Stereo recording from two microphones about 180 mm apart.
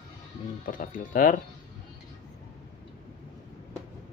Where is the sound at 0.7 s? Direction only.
50° left (ahead or behind).